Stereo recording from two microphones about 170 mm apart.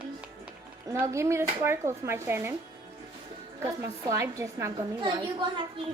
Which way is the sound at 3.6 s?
15° right (ahead or behind).